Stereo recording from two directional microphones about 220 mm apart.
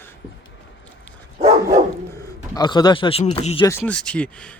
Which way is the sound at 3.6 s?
10° left (ahead or behind).